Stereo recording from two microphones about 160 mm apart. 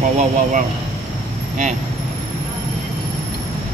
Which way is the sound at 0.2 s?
55° right (ahead or behind).